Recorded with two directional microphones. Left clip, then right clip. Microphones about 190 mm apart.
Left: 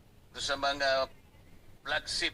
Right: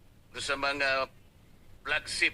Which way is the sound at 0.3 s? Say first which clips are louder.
Right 1 dB; 30° right (ahead or behind).